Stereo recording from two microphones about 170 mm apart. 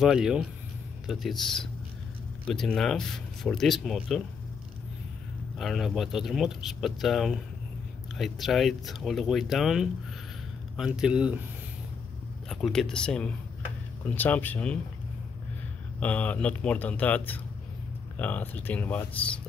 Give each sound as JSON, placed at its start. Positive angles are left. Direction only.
{"t": 0.0, "sound": "speech", "side_deg": -5}
{"t": 5.6, "sound": "speech", "side_deg": 0}
{"t": 12.4, "sound": "speech", "side_deg": 5}
{"t": 16.0, "sound": "speech", "side_deg": 10}